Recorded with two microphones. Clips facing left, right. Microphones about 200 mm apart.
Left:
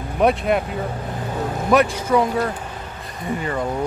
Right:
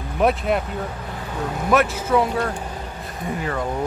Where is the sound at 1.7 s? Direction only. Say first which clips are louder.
Left 2 dB; 5° right (ahead or behind).